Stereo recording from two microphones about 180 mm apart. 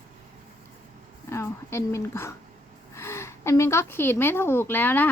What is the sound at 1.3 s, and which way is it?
A woman's voice, 15° left (ahead or behind).